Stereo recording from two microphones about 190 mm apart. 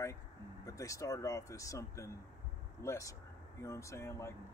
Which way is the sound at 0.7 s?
15° left (ahead or behind).